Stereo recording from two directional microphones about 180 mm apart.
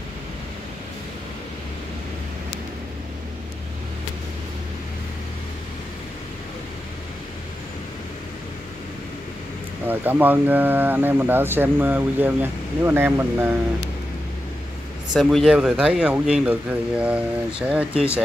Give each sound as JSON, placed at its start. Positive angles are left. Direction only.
{"t": 9.8, "sound": "speech", "side_deg": -10}
{"t": 15.1, "sound": "speech", "side_deg": 0}